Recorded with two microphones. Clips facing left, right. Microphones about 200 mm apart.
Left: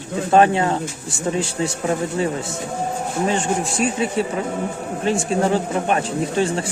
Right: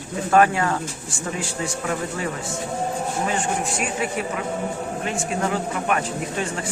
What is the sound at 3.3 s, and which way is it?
Speech, 30° left (ahead or behind).